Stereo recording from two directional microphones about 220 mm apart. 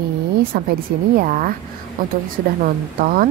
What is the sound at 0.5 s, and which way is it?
Speech, 40° right (ahead or behind).